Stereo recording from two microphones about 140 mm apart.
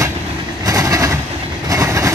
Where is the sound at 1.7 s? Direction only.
20° right (ahead or behind).